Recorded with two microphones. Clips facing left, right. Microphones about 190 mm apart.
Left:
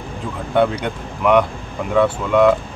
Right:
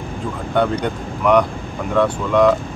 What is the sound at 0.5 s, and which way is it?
Speech, 5° left (ahead or behind).